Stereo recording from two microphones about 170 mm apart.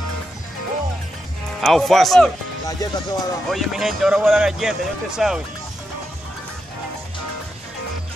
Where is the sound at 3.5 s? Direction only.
Centre (ahead or behind).